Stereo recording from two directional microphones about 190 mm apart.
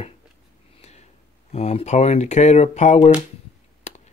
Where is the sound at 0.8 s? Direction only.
35° left (ahead or behind).